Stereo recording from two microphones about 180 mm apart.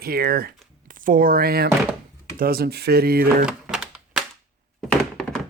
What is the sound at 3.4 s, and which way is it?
Music, 5° right (ahead or behind).